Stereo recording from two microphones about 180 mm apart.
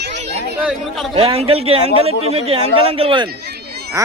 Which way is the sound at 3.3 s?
60° right (ahead or behind).